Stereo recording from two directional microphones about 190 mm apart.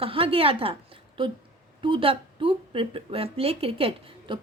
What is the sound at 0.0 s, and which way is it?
A woman's voice, 30° right (ahead or behind).